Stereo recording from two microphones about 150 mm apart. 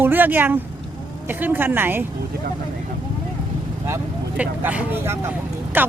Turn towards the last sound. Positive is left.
turn(degrees=-10)  # may be behind; listen again after turning